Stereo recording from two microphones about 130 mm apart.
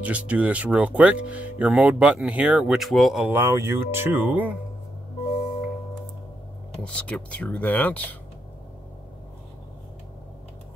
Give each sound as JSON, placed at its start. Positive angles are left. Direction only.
{"t": 0.0, "sound": "speech", "side_deg": -10}
{"t": 3.3, "sound": "speech", "side_deg": -20}
{"t": 6.8, "sound": "speech", "side_deg": 10}